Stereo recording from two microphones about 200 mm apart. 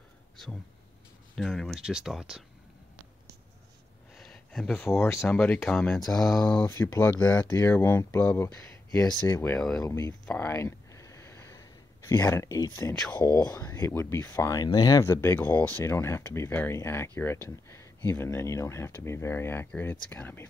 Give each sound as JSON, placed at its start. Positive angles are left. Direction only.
{"t": 1.3, "sound": "speech", "side_deg": 0}
{"t": 4.2, "sound": "a sound", "side_deg": 0}
{"t": 4.8, "sound": "speech", "side_deg": 15}
{"t": 6.6, "sound": "speech", "side_deg": 15}
{"t": 9.8, "sound": "speech", "side_deg": 15}
{"t": 10.2, "sound": "a sound", "side_deg": 10}
{"t": 12.9, "sound": "speech", "side_deg": 5}
{"t": 13.2, "sound": "speech", "side_deg": 20}